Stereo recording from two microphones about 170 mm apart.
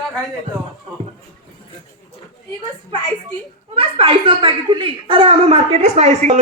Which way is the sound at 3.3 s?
30° right (ahead or behind).